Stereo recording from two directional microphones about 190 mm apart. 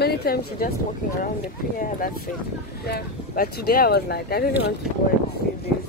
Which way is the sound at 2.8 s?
55° left (ahead or behind).